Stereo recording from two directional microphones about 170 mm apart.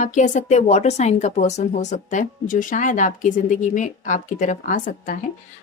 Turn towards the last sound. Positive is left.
turn(degrees=50)  # may be behind; listen again after turning